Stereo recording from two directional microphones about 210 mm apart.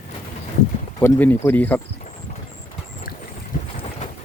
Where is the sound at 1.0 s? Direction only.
10° left (ahead or behind).